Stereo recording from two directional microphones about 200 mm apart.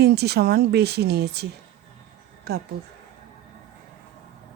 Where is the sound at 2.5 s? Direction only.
55° right (ahead or behind).